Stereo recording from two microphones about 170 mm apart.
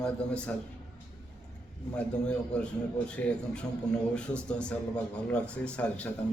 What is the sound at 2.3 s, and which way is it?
A man's voice, 5° left (ahead or behind).